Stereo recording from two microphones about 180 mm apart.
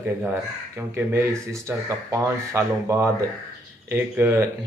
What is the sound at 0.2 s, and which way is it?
A man's voice, 10° right (ahead or behind).